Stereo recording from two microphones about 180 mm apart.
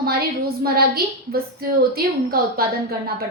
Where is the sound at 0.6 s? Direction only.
55° right (ahead or behind).